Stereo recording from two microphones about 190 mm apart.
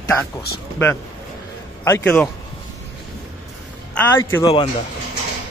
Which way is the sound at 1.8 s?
10° left (ahead or behind).